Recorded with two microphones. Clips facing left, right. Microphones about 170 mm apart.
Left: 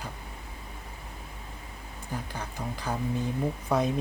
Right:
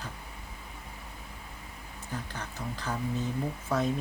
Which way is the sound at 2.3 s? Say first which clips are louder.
Left 2 dB; 10° left (ahead or behind).